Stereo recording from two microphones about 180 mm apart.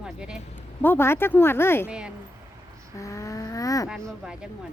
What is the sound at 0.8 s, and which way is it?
Speech, 10° left (ahead or behind).